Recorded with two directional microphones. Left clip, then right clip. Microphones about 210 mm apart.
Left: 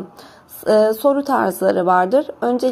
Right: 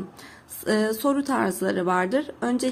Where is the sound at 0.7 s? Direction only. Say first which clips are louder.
Left 10 dB; 15° right (ahead or behind).